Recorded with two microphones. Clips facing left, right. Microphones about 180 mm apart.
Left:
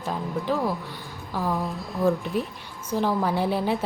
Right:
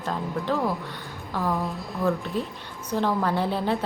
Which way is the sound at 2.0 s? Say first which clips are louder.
Left 2 dB; 15° left (ahead or behind).